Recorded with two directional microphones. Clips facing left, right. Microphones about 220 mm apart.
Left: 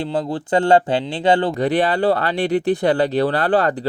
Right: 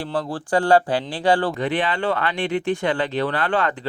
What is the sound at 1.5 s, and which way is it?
Speech, 40° left (ahead or behind).